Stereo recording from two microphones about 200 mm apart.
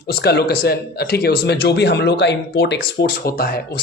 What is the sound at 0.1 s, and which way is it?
Speech, 55° left (ahead or behind).